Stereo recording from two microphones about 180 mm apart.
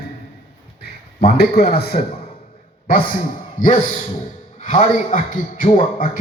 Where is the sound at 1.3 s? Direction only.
60° left (ahead or behind).